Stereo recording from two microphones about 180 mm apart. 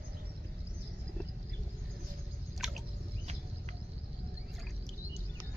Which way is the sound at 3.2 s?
40° right (ahead or behind).